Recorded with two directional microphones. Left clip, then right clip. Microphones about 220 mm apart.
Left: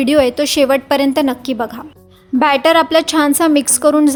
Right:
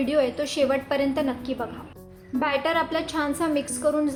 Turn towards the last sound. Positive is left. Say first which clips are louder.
# left 12 dB
turn(degrees=50)  # may be behind; listen again after turning